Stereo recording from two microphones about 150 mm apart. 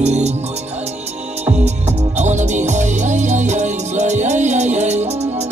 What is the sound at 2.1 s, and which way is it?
Music, 50° right (ahead or behind).